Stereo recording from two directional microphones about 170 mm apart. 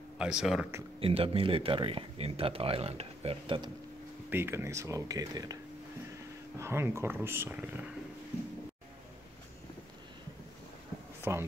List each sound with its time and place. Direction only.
0.2 s speech: 5° right (ahead or behind)
0.9 s speech: 35° right (ahead or behind)
4.3 s speech: 15° right (ahead or behind)
6.6 s speech: 15° right (ahead or behind)
11.3 s speech: 15° right (ahead or behind)